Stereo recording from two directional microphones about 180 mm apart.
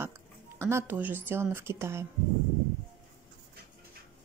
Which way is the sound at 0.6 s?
10° right (ahead or behind).